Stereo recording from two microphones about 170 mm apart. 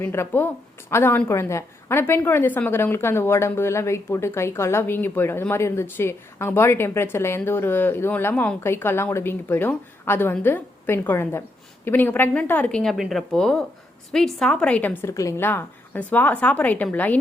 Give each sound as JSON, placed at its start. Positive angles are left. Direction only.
{"t": 0.0, "sound": "a woman's voice", "side_deg": 15}